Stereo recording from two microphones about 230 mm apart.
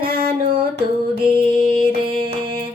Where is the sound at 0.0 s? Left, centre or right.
Right.